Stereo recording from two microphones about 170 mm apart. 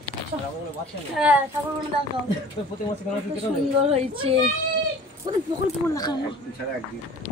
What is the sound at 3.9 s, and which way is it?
Speech, 35° right (ahead or behind).